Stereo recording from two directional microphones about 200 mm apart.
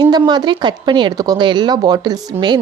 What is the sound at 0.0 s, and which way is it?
Speech, 20° right (ahead or behind).